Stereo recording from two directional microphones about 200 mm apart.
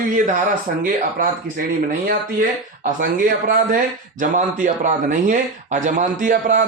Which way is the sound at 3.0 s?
40° right (ahead or behind).